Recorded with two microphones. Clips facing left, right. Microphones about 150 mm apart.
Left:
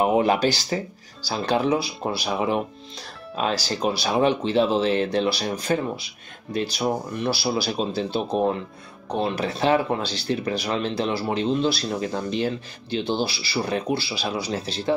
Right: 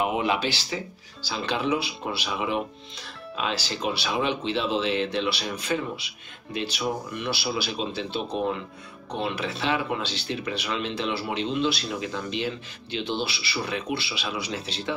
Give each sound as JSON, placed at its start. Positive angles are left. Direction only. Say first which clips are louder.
{"t": 0.0, "sound": "speech", "louder": "left 6 dB", "side_deg": 40}